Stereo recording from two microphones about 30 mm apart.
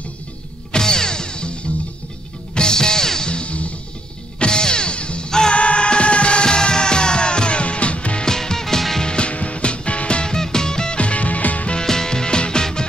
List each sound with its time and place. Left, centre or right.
0.7 s music: left
3.3 s music: left
6.4 s music: left
8.3 s music: centre
9.0 s music: left
9.3 s music: left
10.3 s music: left
11.0 s music: left
11.8 s music: centre